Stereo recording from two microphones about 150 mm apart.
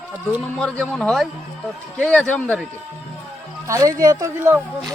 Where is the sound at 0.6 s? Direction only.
5° left (ahead or behind).